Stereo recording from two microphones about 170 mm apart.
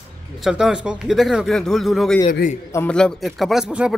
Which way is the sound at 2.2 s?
50° left (ahead or behind).